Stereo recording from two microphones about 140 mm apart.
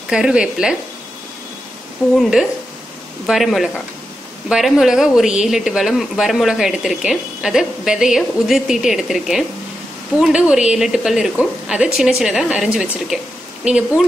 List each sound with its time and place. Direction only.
0.1 s speech: 5° right (ahead or behind)
2.1 s speech: centre (ahead or behind)